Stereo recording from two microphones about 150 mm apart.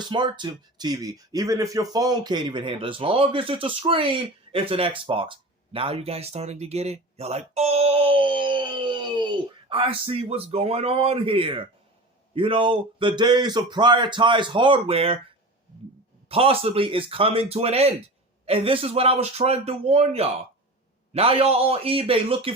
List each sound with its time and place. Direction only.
0.0 s speech: 30° right (ahead or behind)
16.3 s speech: 40° right (ahead or behind)